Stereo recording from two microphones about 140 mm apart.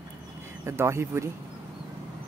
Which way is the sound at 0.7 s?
20° right (ahead or behind).